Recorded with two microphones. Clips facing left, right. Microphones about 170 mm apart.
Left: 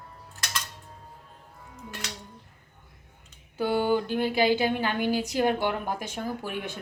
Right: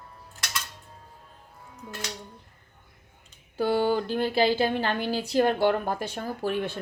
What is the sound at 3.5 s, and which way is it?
Speech, 15° left (ahead or behind).